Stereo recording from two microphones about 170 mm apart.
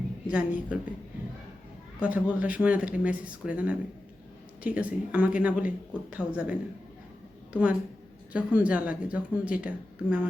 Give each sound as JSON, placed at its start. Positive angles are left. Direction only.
{"t": 0.3, "sound": "speech", "side_deg": -5}
{"t": 2.0, "sound": "a woman's voice", "side_deg": -10}